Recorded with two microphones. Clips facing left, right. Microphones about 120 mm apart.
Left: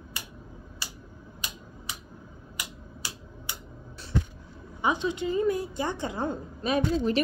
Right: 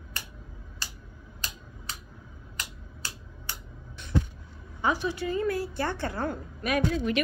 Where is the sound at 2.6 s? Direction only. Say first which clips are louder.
Left 1 dB; 15° left (ahead or behind).